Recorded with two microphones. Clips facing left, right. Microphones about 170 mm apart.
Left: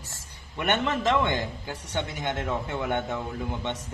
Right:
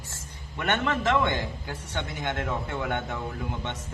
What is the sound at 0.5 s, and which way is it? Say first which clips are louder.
A man's voice: left 1 dB; 20° left (ahead or behind).